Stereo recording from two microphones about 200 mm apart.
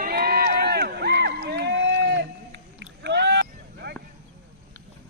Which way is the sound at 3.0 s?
60° right (ahead or behind).